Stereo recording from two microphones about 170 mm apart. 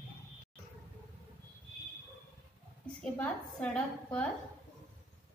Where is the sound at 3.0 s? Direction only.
5° left (ahead or behind).